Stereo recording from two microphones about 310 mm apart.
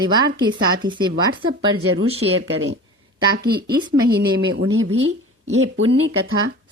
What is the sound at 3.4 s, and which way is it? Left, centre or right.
Speech, right.